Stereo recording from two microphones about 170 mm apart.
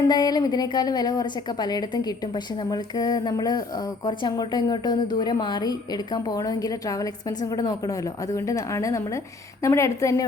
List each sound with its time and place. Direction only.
0.1 s a woman's voice: 25° left (ahead or behind)